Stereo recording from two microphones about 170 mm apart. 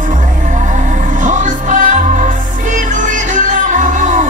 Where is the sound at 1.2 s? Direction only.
50° right (ahead or behind).